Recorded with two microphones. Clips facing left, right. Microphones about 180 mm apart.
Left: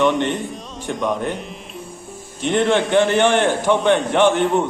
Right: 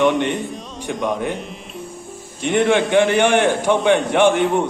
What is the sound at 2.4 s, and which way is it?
A man's voice, 15° right (ahead or behind).